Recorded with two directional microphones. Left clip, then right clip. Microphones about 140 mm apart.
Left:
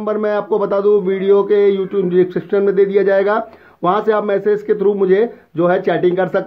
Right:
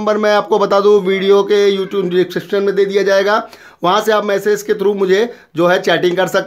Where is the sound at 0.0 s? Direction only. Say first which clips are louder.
Right 5 dB; 30° right (ahead or behind).